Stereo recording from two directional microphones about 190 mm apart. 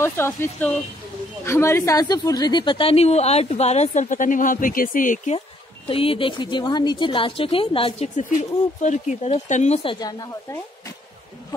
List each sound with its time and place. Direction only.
0.0 s a woman's voice: 15° left (ahead or behind); by 5.4 s 40° left (ahead or behind)
5.9 s a woman's voice: 30° left (ahead or behind)
8.2 s a woman's voice: 40° left (ahead or behind)
9.9 s a woman's voice: 20° left (ahead or behind)